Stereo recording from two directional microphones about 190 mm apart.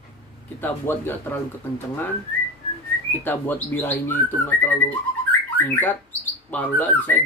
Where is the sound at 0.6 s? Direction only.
10° left (ahead or behind).